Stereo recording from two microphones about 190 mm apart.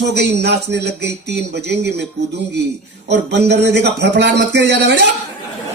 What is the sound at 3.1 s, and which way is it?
Speech, 65° right (ahead or behind).